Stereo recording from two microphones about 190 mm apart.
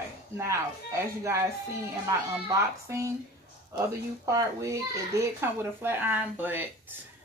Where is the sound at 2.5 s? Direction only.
15° right (ahead or behind).